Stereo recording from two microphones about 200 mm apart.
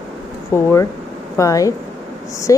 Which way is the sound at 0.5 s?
15° left (ahead or behind).